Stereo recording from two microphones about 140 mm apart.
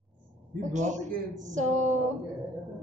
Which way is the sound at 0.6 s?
60° right (ahead or behind).